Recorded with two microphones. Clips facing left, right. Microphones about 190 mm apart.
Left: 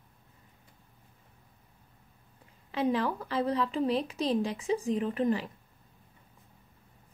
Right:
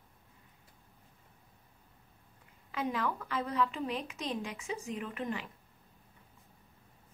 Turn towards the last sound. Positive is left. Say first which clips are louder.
# left 9 dB
turn(degrees=35)  # may be behind; listen again after turning